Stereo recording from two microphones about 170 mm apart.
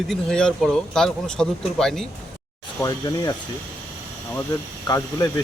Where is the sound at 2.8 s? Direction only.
20° left (ahead or behind).